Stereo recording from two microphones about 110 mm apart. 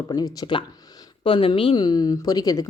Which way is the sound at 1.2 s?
55° left (ahead or behind).